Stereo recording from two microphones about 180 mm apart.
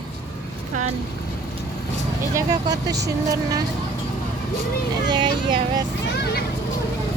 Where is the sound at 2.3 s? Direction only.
20° right (ahead or behind).